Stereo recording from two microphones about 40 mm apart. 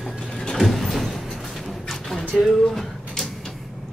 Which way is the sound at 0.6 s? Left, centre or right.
Centre.